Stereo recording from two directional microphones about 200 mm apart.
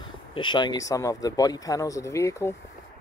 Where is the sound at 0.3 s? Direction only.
25° left (ahead or behind).